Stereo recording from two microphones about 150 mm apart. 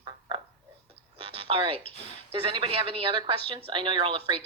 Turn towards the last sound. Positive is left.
turn(degrees=-35)  # may be behind; listen again after turning